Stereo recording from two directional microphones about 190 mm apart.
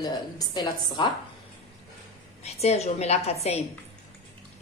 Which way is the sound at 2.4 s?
35° left (ahead or behind).